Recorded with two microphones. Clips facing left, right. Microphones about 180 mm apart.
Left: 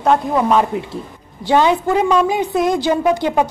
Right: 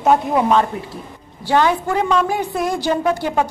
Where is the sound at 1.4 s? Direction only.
20° left (ahead or behind).